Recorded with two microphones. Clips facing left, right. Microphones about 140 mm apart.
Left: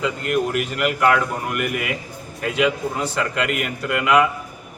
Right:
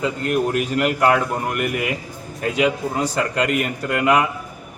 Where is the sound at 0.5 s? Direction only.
35° right (ahead or behind).